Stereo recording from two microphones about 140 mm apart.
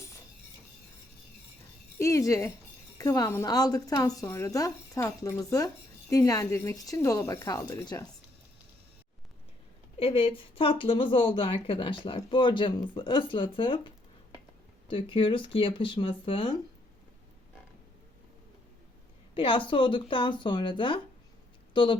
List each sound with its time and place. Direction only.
2.0 s a woman's voice: 20° left (ahead or behind)
10.0 s speech: 40° left (ahead or behind)
19.3 s speech: 40° left (ahead or behind)